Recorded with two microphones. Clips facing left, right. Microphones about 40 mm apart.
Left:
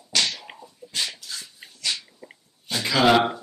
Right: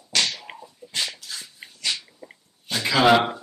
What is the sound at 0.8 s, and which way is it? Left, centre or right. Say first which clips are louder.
Dog: even; centre.